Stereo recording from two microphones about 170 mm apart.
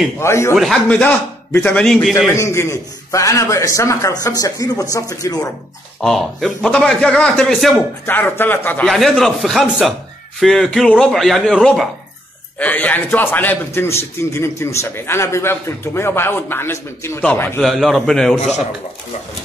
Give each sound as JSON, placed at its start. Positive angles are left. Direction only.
{"t": 0.2, "sound": "a man's voice", "side_deg": 15}
{"t": 0.6, "sound": "a man's voice", "side_deg": 0}
{"t": 2.1, "sound": "a man's voice", "side_deg": 15}
{"t": 5.9, "sound": "a man's voice", "side_deg": 0}